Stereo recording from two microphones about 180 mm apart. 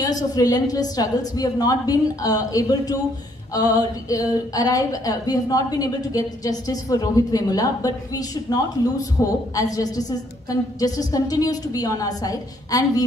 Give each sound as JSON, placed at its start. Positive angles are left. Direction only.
{"t": 0.0, "sound": "a woman's voice", "side_deg": 20}